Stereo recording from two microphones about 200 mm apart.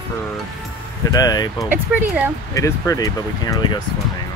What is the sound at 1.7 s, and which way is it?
Speech, 10° right (ahead or behind).